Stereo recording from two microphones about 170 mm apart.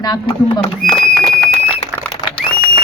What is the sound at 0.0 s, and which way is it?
Speech, 25° left (ahead or behind).